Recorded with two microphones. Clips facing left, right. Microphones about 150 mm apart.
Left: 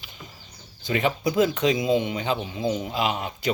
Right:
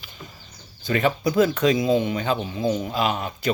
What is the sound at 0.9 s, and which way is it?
Speech, 20° left (ahead or behind).